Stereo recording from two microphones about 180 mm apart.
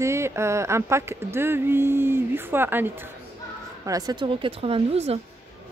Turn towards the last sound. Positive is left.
turn(degrees=-35)  # may be behind; listen again after turning